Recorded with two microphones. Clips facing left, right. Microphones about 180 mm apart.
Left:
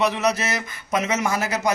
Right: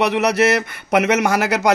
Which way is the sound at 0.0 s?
65° right (ahead or behind).